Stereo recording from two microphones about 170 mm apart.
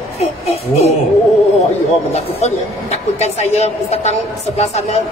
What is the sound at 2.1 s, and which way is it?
A woman's voice, 40° left (ahead or behind).